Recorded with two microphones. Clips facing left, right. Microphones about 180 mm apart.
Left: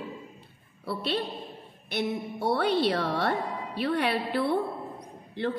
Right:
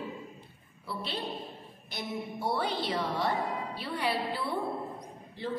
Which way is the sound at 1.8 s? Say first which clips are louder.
Left 7 dB; 65° left (ahead or behind).